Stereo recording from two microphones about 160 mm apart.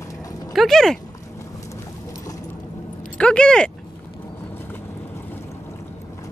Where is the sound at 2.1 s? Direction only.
20° left (ahead or behind).